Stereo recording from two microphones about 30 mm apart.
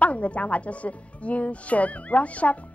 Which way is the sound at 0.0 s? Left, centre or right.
Left.